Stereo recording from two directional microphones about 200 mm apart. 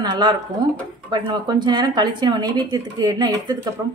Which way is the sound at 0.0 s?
20° right (ahead or behind).